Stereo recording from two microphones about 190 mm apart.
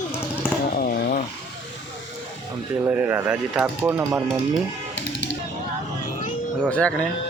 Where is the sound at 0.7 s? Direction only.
50° left (ahead or behind).